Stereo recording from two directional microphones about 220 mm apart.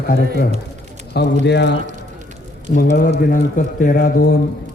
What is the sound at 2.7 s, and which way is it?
A man's voice, 40° left (ahead or behind).